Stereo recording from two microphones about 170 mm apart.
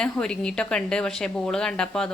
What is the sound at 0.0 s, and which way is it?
A woman's voice, 5° left (ahead or behind).